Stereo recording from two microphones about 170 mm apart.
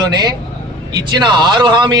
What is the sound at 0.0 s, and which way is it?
A man's voice, 25° right (ahead or behind).